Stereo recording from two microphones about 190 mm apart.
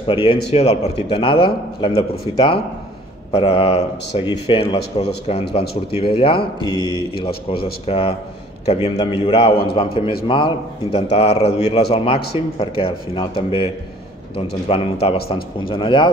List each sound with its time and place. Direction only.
0.0 s a man's voice: 30° left (ahead or behind)
7.2 s speech: 55° left (ahead or behind)
7.8 s a man's voice: 30° left (ahead or behind)
14.7 s a man's voice: 30° left (ahead or behind)